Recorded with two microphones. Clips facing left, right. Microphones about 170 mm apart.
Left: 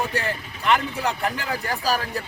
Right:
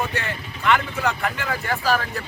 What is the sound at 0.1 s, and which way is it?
Speech, 35° left (ahead or behind).